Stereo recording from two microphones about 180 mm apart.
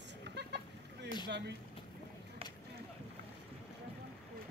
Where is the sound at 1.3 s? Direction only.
70° right (ahead or behind).